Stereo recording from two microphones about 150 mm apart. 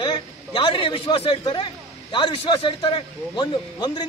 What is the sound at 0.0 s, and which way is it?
A man's voice, 35° left (ahead or behind).